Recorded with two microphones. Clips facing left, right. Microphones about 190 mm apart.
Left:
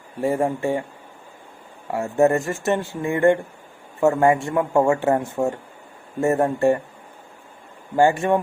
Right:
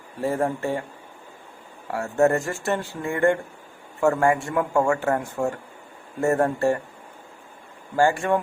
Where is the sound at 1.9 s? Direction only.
15° left (ahead or behind).